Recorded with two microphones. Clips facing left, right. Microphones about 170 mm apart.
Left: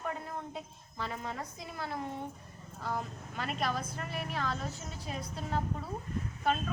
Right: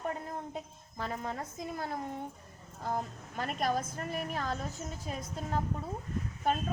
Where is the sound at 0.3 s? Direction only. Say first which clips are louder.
Right 1 dB; 45° right (ahead or behind).